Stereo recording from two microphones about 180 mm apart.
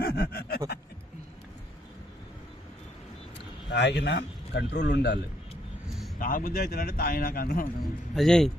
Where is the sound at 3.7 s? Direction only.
75° left (ahead or behind).